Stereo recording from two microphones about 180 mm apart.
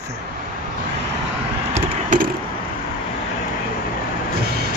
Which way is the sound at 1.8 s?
45° right (ahead or behind).